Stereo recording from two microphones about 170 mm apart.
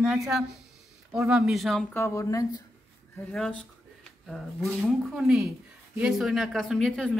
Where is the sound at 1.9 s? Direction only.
15° left (ahead or behind).